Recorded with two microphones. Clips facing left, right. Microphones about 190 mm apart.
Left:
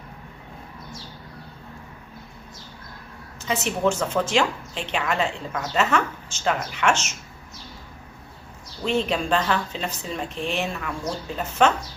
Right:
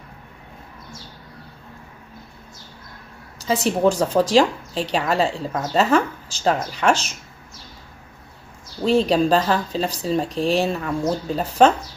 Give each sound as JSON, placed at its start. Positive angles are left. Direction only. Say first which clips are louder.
{"t": 3.4, "sound": "a woman's voice", "louder": "right 5 dB", "side_deg": -35}
{"t": 8.8, "sound": "a woman's voice", "louder": "right 7 dB", "side_deg": -35}